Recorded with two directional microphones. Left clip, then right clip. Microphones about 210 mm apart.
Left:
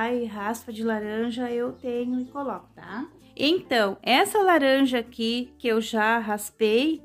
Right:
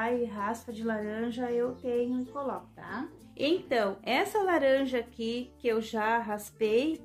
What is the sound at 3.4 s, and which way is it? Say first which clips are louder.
Speech: left 6 dB; 45° left (ahead or behind).